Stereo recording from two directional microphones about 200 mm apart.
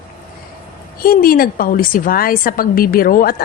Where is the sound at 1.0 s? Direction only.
45° left (ahead or behind).